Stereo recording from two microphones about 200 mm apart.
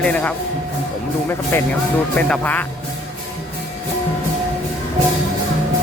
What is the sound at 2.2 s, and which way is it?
Speech, 10° left (ahead or behind).